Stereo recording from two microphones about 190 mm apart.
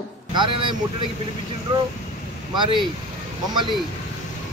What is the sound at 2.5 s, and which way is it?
Speech, 25° right (ahead or behind).